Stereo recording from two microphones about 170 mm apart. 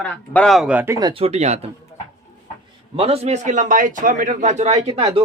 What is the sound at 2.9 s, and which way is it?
A man's voice, 35° right (ahead or behind).